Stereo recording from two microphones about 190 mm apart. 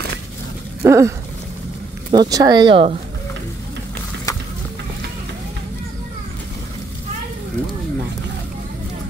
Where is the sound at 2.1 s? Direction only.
20° right (ahead or behind).